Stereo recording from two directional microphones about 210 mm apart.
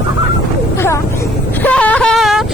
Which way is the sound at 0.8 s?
10° left (ahead or behind).